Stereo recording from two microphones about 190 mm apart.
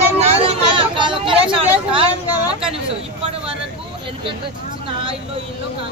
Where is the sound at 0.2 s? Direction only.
30° right (ahead or behind).